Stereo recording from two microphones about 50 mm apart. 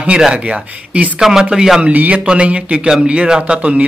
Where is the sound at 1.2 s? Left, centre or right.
Centre.